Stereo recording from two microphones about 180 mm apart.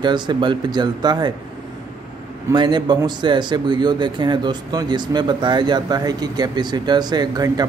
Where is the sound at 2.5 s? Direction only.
25° right (ahead or behind).